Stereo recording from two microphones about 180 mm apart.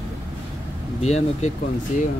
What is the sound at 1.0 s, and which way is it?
Speech, 40° left (ahead or behind).